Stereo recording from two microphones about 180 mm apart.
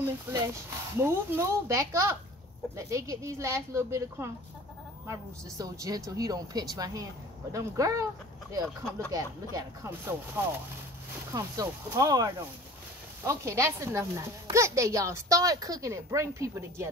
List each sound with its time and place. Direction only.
0.0 s speech: 15° right (ahead or behind)